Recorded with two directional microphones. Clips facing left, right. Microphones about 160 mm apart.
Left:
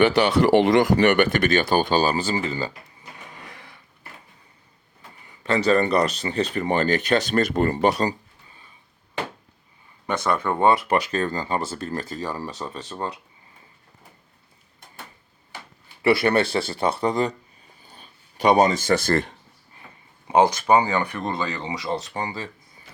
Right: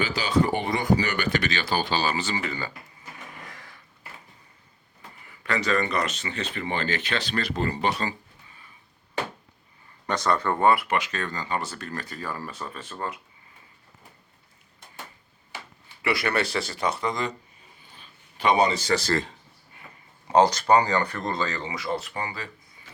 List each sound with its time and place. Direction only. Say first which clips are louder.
0.0 s speech: left 6 dB; 65° left (ahead or behind); by 2.7 s 30° left (ahead or behind)
3.5 s a sound: left 2 dB; 15° left (ahead or behind)
5.3 s speech: left 6 dB; 25° left (ahead or behind); by 8.1 s 40° left (ahead or behind)
10.2 s speech: left 2 dB; 10° left (ahead or behind)
10.8 s speech: left 5 dB; 35° left (ahead or behind)
16.0 s speech: left 7 dB; 30° left (ahead or behind); by 19.3 s 55° left (ahead or behind)
20.2 s speech: left 1 dB; 15° left (ahead or behind)